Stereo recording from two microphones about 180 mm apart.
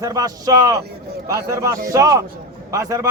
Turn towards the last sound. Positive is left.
turn(degrees=-15)  # may be behind; listen again after turning